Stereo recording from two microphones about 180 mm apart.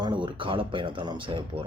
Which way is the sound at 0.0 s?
30° right (ahead or behind).